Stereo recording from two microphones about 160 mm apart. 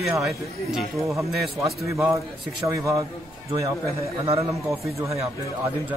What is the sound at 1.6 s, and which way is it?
A man's voice, 20° right (ahead or behind).